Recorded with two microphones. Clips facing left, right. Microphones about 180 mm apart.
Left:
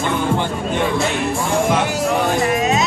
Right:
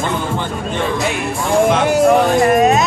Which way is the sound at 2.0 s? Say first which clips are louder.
Right 8 dB; 55° right (ahead or behind).